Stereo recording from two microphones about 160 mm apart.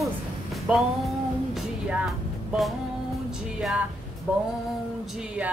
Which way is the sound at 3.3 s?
5° right (ahead or behind).